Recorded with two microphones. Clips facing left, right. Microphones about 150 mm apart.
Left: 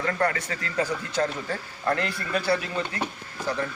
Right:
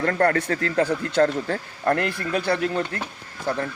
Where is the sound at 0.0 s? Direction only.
55° right (ahead or behind).